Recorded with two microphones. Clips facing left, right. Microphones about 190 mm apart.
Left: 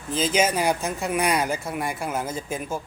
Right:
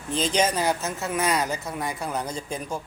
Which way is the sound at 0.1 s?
5° left (ahead or behind).